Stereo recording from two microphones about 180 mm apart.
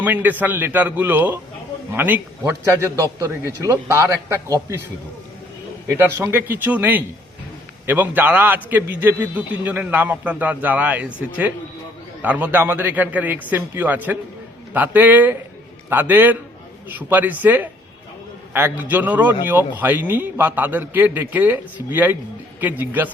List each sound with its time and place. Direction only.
0.0 s a man's voice: 10° right (ahead or behind)
6.0 s a man's voice: 10° right (ahead or behind)
12.2 s a man's voice: 10° right (ahead or behind)